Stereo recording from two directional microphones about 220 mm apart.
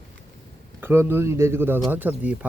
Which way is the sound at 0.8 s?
10° right (ahead or behind).